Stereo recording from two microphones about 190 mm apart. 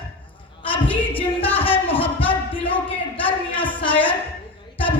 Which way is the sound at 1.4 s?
30° left (ahead or behind).